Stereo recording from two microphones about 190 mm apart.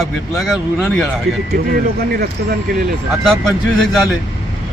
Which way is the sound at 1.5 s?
55° right (ahead or behind).